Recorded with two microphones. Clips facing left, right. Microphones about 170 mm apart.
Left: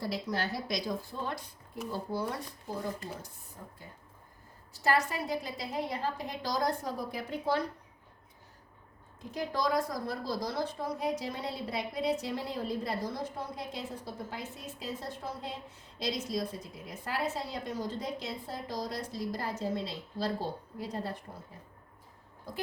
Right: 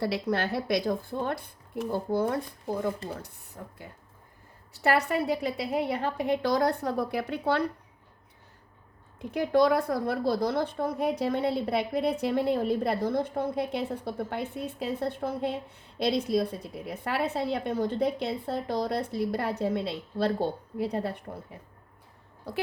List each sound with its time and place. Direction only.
0.0 s a woman's voice: 65° right (ahead or behind)
3.6 s a woman's voice: 65° right (ahead or behind)
9.1 s a woman's voice: 60° right (ahead or behind)
22.5 s speech: 70° right (ahead or behind)